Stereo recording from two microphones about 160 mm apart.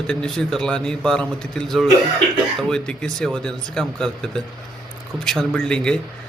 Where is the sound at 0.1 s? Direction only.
5° left (ahead or behind).